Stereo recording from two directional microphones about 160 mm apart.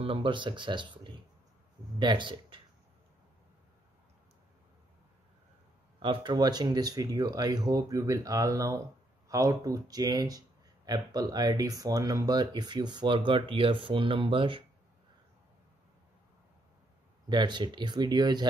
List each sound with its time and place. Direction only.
0.0 s speech: 35° right (ahead or behind)
5.9 s speech: 30° right (ahead or behind)
17.3 s speech: 30° right (ahead or behind)